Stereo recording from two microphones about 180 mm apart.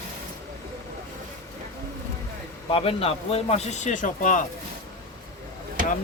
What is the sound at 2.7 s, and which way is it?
Speech, 30° left (ahead or behind).